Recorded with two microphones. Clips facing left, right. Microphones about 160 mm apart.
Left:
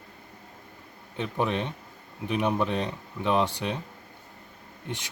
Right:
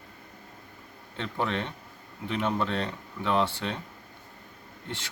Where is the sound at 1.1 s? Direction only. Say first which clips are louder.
Left 3 dB; 15° left (ahead or behind).